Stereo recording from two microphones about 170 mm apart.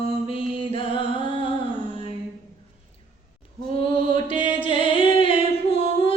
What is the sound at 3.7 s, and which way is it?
Music, 30° left (ahead or behind).